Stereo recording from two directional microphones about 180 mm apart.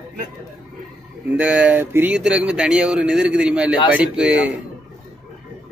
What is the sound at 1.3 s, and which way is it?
Speech, 5° right (ahead or behind).